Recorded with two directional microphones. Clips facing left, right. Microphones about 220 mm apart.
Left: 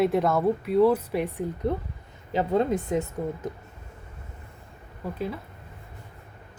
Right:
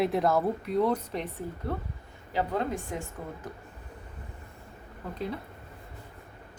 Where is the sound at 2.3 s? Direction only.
20° left (ahead or behind).